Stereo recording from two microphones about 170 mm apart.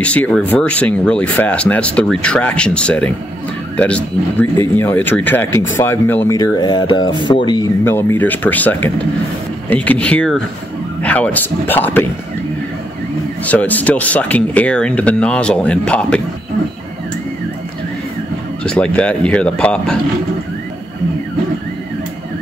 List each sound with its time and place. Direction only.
0.0 s speech: 10° left (ahead or behind); by 7.7 s 25° left (ahead or behind)
7.8 s speech: 15° left (ahead or behind)
13.5 s speech: 10° left (ahead or behind)
18.6 s speech: 5° left (ahead or behind)